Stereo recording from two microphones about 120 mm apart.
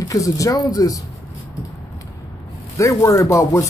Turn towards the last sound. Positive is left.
turn(degrees=25)  # may be behind; listen again after turning